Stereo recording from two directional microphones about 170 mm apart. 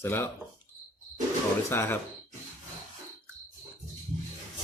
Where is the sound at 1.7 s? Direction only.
15° left (ahead or behind).